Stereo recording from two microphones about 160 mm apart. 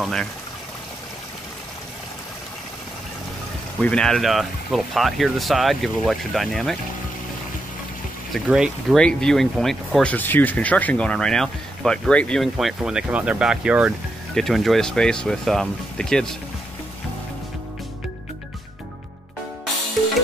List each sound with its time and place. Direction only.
0.0 s speech: centre (ahead or behind)
3.8 s speech: 5° left (ahead or behind)
8.3 s speech: 5° right (ahead or behind)